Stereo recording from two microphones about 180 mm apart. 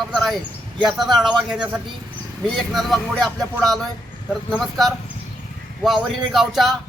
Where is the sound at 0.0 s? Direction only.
Centre (ahead or behind).